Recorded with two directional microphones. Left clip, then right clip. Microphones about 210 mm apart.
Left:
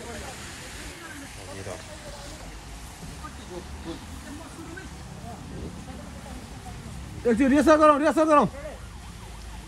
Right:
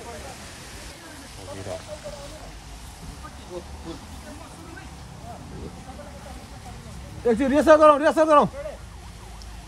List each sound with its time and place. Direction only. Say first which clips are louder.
7.2 s speech: right 3 dB; 35° right (ahead or behind)